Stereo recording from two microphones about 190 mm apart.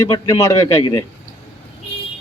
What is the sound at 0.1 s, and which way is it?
Speech, 20° left (ahead or behind).